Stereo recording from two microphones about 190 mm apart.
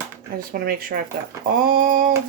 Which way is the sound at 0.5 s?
50° right (ahead or behind).